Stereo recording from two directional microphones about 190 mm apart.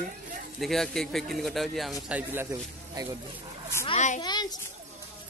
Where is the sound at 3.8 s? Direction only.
40° left (ahead or behind).